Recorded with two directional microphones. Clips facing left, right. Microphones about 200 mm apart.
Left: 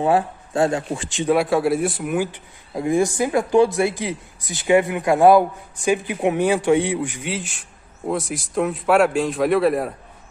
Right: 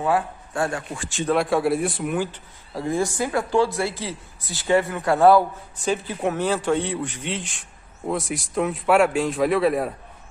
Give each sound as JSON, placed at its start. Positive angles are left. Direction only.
{"t": 0.0, "sound": "a man's voice", "side_deg": 25}
{"t": 1.3, "sound": "a man's voice", "side_deg": 0}